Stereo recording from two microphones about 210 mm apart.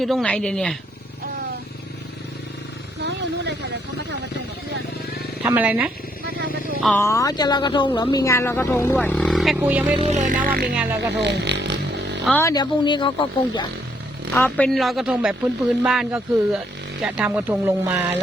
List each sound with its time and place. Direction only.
0.0 s speech: centre (ahead or behind)
3.0 s a sound: 55° right (ahead or behind)
5.4 s speech: 10° right (ahead or behind)
6.2 s a sound: 45° right (ahead or behind)
6.8 s speech: 10° left (ahead or behind); by 9.9 s 10° right (ahead or behind)
9.9 s speech: 30° right (ahead or behind)
11.2 s a sound: 55° right (ahead or behind)
12.4 s speech: 15° left (ahead or behind)
14.3 s speech: 10° left (ahead or behind); by 18.0 s 10° right (ahead or behind)